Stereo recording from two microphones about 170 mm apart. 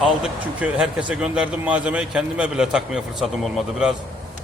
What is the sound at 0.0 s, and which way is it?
A man's voice, 5° right (ahead or behind).